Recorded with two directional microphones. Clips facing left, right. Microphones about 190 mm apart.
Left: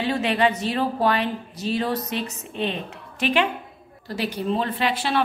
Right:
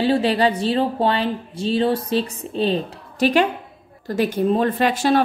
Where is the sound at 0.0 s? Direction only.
35° right (ahead or behind).